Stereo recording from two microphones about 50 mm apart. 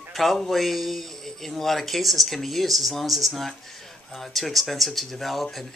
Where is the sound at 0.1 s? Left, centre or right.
Centre.